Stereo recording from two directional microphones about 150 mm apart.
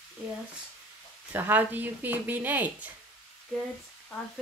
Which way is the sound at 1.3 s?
10° right (ahead or behind).